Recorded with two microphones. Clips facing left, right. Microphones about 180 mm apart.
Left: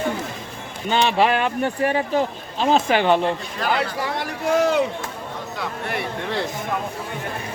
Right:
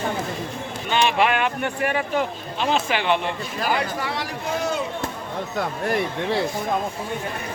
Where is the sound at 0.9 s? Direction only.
35° left (ahead or behind).